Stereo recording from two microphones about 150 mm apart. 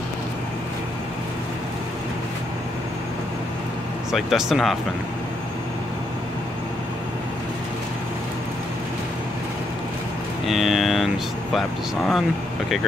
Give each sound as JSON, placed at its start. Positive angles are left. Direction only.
{"t": 4.1, "sound": "speech", "side_deg": 0}
{"t": 10.4, "sound": "vehicle", "side_deg": 0}
{"t": 12.1, "sound": "speech", "side_deg": 0}